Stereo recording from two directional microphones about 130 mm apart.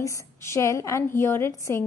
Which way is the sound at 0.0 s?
25° left (ahead or behind).